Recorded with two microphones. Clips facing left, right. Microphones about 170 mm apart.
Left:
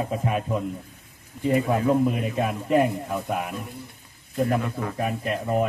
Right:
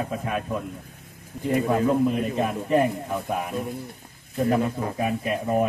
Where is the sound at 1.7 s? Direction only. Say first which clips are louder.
Even; 10° left (ahead or behind).